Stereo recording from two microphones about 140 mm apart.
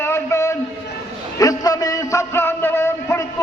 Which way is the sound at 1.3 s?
25° left (ahead or behind).